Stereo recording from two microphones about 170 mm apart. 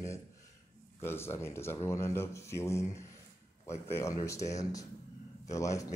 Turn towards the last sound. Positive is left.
turn(degrees=20)  # may be behind; listen again after turning